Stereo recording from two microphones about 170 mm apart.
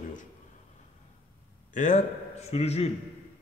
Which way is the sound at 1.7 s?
45° left (ahead or behind).